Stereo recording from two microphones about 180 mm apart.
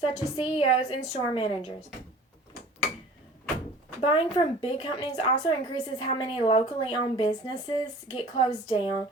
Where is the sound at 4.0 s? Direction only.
30° left (ahead or behind).